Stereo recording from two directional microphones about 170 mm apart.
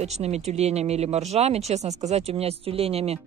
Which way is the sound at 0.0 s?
40° right (ahead or behind).